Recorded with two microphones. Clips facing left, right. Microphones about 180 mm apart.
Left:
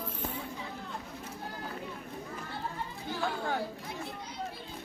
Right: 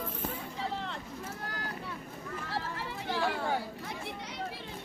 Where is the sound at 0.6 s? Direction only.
90° right.